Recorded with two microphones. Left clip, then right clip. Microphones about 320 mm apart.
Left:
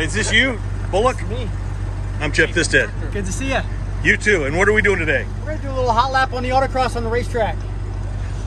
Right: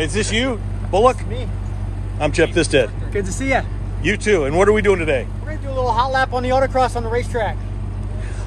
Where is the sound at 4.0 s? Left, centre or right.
Centre.